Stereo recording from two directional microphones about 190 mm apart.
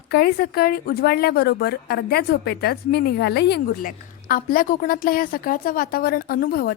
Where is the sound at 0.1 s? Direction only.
55° left (ahead or behind).